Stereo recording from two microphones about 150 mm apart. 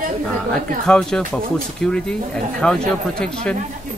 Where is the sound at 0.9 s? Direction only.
5° left (ahead or behind).